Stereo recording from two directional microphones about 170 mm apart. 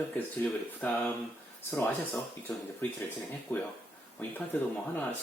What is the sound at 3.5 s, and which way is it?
Speech, 10° left (ahead or behind).